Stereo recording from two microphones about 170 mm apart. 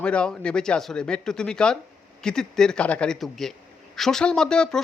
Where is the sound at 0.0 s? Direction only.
5° left (ahead or behind).